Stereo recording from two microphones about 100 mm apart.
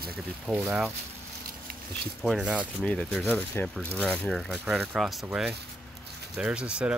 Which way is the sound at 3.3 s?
15° left (ahead or behind).